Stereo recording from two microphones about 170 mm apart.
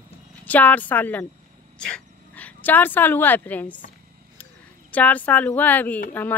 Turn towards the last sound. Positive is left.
turn(degrees=10)  # may be behind; listen again after turning